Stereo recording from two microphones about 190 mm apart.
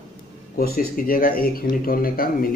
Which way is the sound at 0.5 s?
50° left (ahead or behind).